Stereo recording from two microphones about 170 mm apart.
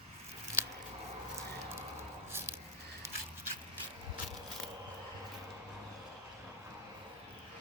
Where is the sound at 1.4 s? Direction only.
15° right (ahead or behind).